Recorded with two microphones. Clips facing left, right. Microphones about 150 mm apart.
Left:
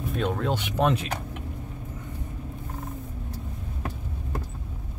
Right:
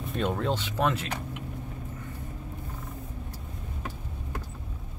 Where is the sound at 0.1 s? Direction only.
Centre (ahead or behind).